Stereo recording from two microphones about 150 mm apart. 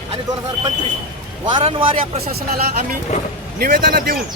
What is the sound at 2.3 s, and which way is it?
A man's voice, 80° right.